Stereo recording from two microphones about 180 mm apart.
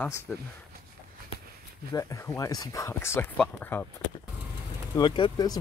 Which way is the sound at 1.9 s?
20° left (ahead or behind).